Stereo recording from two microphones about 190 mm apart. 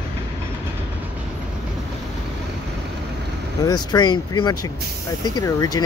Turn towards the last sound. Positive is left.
turn(degrees=20)  # may be behind; listen again after turning